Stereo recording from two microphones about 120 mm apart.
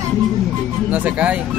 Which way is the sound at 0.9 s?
10° right (ahead or behind).